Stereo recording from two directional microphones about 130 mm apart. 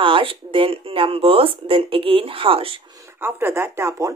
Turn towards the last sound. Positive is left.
turn(degrees=-20)  # may be behind; listen again after turning